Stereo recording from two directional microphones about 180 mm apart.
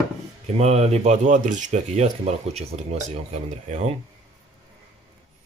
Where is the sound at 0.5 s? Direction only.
35° right (ahead or behind).